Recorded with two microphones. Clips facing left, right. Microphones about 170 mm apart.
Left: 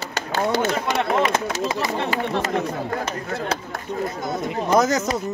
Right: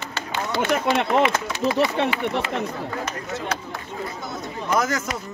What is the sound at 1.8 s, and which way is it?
Speech, 40° left (ahead or behind).